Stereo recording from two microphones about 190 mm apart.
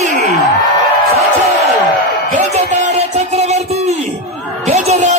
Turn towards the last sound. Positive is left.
turn(degrees=-35)  # may be behind; listen again after turning